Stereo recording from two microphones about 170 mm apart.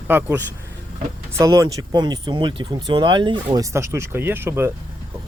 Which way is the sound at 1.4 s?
20° right (ahead or behind).